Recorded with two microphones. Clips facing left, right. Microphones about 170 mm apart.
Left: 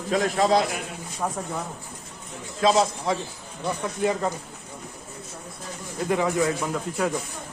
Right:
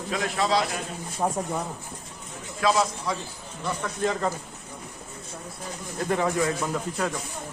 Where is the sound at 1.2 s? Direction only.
25° right (ahead or behind).